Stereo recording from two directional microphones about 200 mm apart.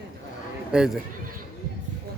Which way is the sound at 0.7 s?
Centre (ahead or behind).